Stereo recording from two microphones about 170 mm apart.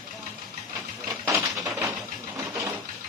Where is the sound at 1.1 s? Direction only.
15° right (ahead or behind).